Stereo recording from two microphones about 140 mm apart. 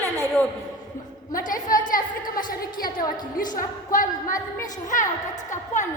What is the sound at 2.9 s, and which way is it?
Speech, 75° left (ahead or behind).